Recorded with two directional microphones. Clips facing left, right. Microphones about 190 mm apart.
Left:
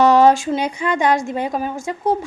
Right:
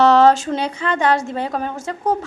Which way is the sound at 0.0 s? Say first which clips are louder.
Even; 15° left (ahead or behind).